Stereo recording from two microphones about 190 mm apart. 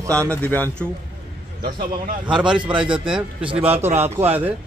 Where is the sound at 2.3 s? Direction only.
5° right (ahead or behind).